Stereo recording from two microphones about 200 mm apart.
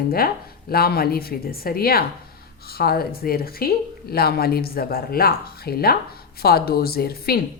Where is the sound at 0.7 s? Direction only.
50° left (ahead or behind).